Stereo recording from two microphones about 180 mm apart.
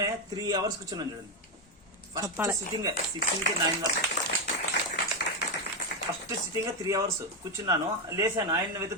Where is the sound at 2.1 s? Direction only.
15° right (ahead or behind).